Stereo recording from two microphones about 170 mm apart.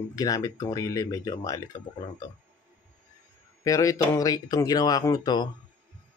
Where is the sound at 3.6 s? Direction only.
20° left (ahead or behind).